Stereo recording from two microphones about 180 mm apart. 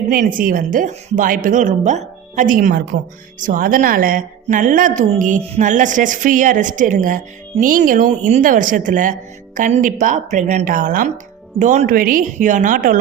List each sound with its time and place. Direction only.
0.1 s a woman's voice: 50° right (ahead or behind)